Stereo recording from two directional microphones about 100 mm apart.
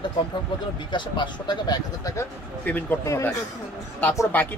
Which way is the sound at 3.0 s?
30° left (ahead or behind).